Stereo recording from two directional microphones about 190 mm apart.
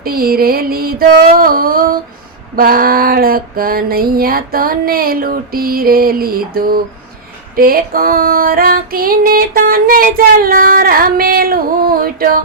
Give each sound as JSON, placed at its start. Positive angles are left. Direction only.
{"t": 0.0, "sound": "female singing", "side_deg": -50}